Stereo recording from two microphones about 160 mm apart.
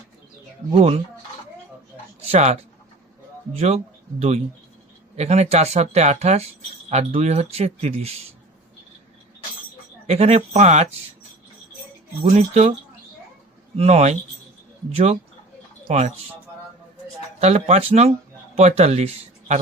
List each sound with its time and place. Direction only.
0.7 s speech: 40° right (ahead or behind)
2.2 s speech: 40° right (ahead or behind)
5.1 s speech: 40° right (ahead or behind)
10.1 s speech: 40° right (ahead or behind)
12.2 s speech: 40° right (ahead or behind)
13.7 s speech: 40° right (ahead or behind)
17.4 s speech: 40° right (ahead or behind)